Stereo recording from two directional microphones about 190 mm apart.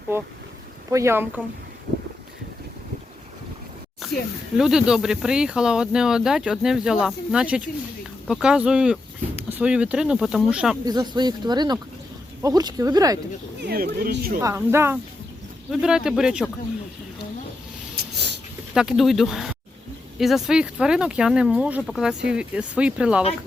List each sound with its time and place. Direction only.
0.1 s speech: 15° right (ahead or behind)
4.0 s snake: centre (ahead or behind)
4.5 s speech: 5° right (ahead or behind)
10.8 s speech: 20° right (ahead or behind)
13.6 s speech: 55° right (ahead or behind)
14.4 s speech: 15° right (ahead or behind)
17.9 s a sound: 60° right (ahead or behind)
18.7 s speech: 5° right (ahead or behind)